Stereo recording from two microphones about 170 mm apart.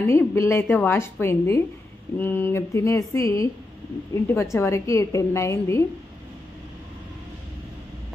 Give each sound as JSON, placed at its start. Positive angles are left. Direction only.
{"t": 0.0, "sound": "a woman's voice", "side_deg": 15}